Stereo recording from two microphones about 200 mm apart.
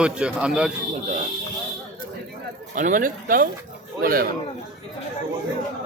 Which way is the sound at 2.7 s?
40° right (ahead or behind).